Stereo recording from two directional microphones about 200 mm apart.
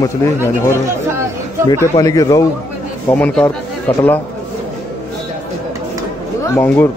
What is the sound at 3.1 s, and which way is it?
Speech, 5° left (ahead or behind).